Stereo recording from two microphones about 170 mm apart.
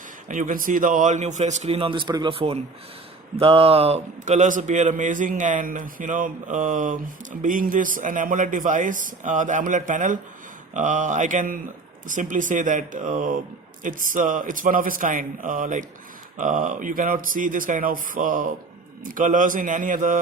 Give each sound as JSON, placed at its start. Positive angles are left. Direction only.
{"t": 0.3, "sound": "a man's voice", "side_deg": -50}